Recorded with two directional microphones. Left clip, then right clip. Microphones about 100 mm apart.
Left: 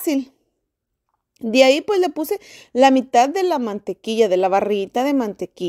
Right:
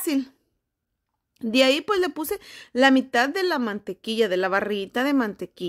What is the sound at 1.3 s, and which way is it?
A woman's voice, 25° left (ahead or behind).